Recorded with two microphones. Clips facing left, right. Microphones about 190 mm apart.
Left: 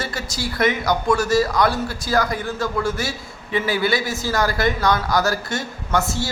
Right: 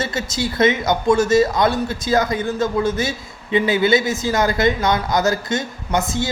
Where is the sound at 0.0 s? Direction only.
20° right (ahead or behind).